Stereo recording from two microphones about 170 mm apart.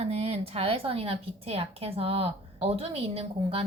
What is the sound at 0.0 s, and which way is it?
A woman's voice, 35° right (ahead or behind).